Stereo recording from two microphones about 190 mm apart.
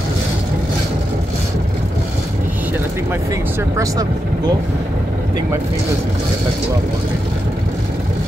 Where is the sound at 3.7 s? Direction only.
20° right (ahead or behind).